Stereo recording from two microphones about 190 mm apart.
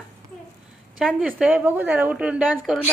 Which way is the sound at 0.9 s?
5° right (ahead or behind).